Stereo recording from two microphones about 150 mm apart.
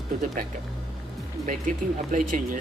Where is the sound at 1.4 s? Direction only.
60° right (ahead or behind).